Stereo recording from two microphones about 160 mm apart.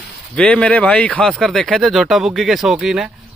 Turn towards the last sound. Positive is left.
turn(degrees=-5)  # may be behind; listen again after turning